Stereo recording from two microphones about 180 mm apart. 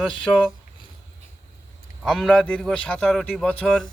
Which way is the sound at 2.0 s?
Centre (ahead or behind).